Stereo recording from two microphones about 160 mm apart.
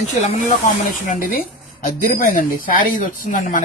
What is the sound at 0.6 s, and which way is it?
Speech, 55° left (ahead or behind).